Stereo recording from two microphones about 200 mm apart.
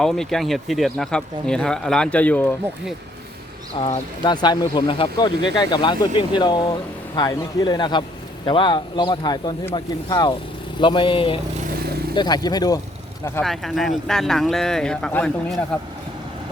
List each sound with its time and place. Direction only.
0.0 s speech: centre (ahead or behind)
3.8 s speech: 30° left (ahead or behind)
13.4 s speech: centre (ahead or behind)